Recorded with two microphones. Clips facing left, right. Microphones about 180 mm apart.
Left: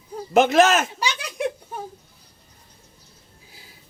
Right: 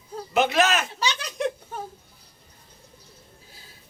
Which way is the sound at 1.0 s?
10° left (ahead or behind).